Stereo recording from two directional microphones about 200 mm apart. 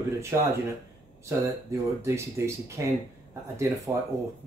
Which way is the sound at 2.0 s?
15° right (ahead or behind).